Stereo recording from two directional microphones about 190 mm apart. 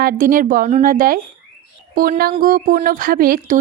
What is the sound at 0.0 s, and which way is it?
Speech, 50° right (ahead or behind).